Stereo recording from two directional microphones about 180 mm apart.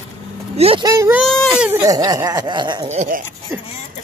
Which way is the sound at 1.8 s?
20° right (ahead or behind).